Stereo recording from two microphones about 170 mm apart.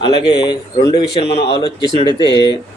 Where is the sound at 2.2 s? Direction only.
25° right (ahead or behind).